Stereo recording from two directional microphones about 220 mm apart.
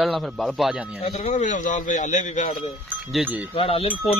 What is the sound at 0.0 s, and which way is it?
Speech, centre (ahead or behind).